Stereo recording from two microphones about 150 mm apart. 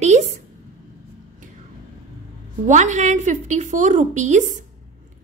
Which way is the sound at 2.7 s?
55° right (ahead or behind).